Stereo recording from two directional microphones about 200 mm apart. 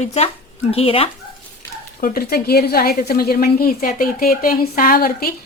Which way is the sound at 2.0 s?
50° left (ahead or behind).